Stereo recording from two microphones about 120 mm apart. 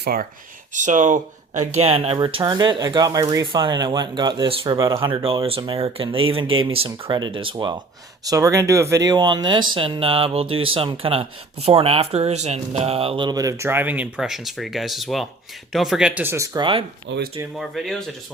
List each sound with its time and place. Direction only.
0.7 s speech: 90° right; by 2.1 s 55° right (ahead or behind)
2.1 s speech: 40° right (ahead or behind)
3.4 s speech: 40° right (ahead or behind)
4.8 s speech: 30° right (ahead or behind)
5.0 s speech: 45° right (ahead or behind)
7.5 s speech: 30° right (ahead or behind)
13.3 s speech: 30° right (ahead or behind); by 16.2 s 5° right (ahead or behind)
16.2 s speech: 20° right (ahead or behind)
16.6 s speech: 45° right (ahead or behind)
17.6 s speech: centre (ahead or behind)